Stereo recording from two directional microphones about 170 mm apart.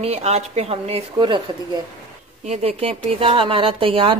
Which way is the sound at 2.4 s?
40° right (ahead or behind).